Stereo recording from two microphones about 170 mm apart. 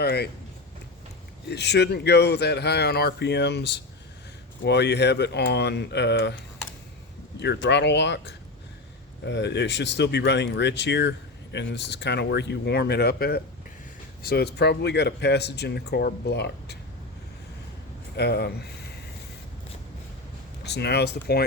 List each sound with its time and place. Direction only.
0.0 s speech: 75° left (ahead or behind)
1.5 s speech: 80° left
18.2 s speech: 75° left (ahead or behind)
20.7 s speech: 80° left